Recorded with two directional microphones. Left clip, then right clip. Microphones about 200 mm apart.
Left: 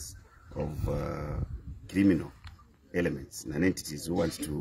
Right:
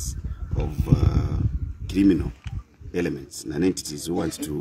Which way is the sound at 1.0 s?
5° left (ahead or behind).